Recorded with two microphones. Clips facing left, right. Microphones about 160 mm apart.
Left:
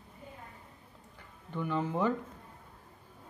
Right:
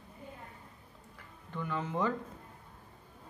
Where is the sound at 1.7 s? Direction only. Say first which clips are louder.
Left 3 dB; 10° left (ahead or behind).